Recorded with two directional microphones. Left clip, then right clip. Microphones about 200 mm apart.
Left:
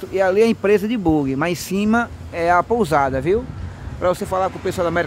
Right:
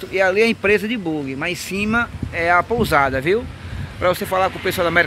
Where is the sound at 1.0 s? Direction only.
35° left (ahead or behind).